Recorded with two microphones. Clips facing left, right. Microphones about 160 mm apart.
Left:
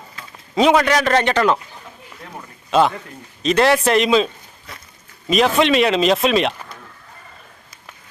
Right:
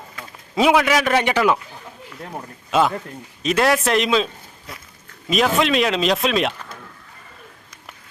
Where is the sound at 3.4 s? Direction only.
5° right (ahead or behind).